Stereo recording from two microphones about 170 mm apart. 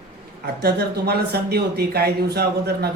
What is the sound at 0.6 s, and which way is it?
Speech, 70° right (ahead or behind).